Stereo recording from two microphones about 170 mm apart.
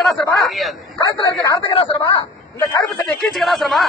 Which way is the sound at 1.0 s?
20° left (ahead or behind).